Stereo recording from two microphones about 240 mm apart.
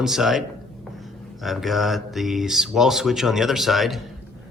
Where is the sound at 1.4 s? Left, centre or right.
Centre.